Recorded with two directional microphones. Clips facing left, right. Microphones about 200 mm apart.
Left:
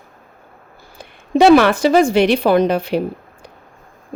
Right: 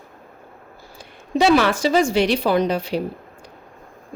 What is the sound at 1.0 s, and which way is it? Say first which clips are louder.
A woman's voice: left 6 dB; 55° left (ahead or behind).